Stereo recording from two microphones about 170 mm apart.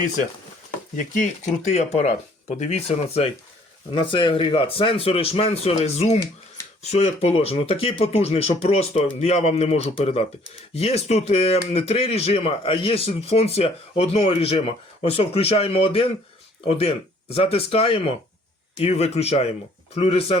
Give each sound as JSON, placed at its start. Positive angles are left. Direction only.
{"t": 0.9, "sound": "speech", "side_deg": 50}